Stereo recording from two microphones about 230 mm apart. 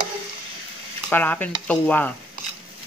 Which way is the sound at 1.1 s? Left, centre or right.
Centre.